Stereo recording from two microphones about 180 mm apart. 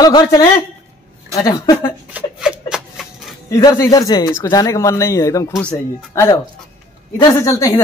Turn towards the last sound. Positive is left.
turn(degrees=20)  # may be behind; listen again after turning